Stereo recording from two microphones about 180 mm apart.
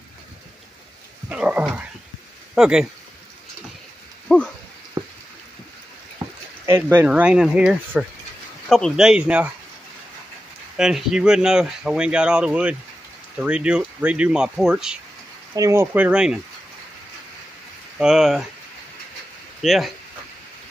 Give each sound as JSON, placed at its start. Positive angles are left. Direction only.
{"t": 1.3, "sound": "speech", "side_deg": -10}
{"t": 4.3, "sound": "a sound", "side_deg": 5}
{"t": 5.0, "sound": "a sound", "side_deg": -15}
{"t": 6.6, "sound": "speech", "side_deg": -15}
{"t": 10.8, "sound": "speech", "side_deg": -5}
{"t": 15.5, "sound": "speech", "side_deg": -15}
{"t": 17.9, "sound": "speech", "side_deg": 0}
{"t": 19.6, "sound": "speech", "side_deg": 0}